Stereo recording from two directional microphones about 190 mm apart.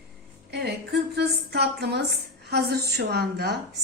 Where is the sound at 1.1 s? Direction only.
60° right (ahead or behind).